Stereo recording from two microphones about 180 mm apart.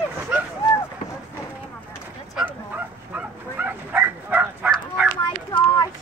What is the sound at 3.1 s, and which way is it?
Dog, 10° right (ahead or behind).